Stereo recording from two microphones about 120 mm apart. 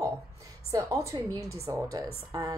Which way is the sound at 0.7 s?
25° right (ahead or behind).